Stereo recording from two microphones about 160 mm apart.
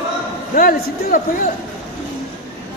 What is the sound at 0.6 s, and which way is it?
Speech, 60° left (ahead or behind).